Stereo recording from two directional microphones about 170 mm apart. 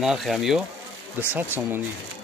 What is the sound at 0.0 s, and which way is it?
Speech, centre (ahead or behind).